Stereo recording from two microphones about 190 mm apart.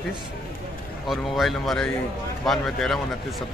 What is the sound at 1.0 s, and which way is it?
A man's voice, centre (ahead or behind).